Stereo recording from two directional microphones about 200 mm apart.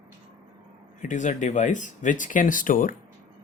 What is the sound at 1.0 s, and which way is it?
Speech, 40° left (ahead or behind).